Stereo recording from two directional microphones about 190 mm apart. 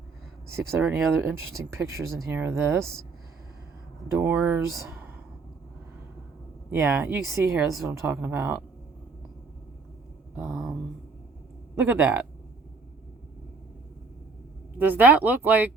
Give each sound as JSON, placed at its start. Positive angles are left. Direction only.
{"t": 0.5, "sound": "speech", "side_deg": -10}
{"t": 4.2, "sound": "speech", "side_deg": -10}
{"t": 6.7, "sound": "speech", "side_deg": -10}
{"t": 7.5, "sound": "speech", "side_deg": 0}
{"t": 7.9, "sound": "speech", "side_deg": -10}
{"t": 10.3, "sound": "speech", "side_deg": 0}
{"t": 14.8, "sound": "speech", "side_deg": -10}